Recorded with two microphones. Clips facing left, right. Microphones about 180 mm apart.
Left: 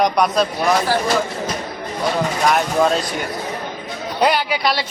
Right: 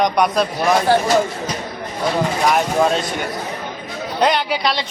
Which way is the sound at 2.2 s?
Centre (ahead or behind).